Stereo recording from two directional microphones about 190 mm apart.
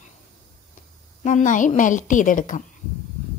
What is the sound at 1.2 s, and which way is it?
A woman's voice, 40° left (ahead or behind).